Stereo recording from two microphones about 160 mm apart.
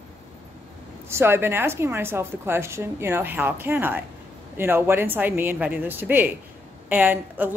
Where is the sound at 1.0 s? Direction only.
15° right (ahead or behind).